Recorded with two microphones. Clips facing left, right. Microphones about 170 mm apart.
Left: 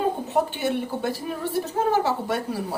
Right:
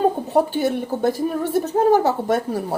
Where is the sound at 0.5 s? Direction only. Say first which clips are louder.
Right 4 dB; 40° right (ahead or behind).